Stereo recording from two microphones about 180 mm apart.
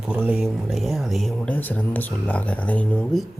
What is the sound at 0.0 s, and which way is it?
Speech, 5° right (ahead or behind).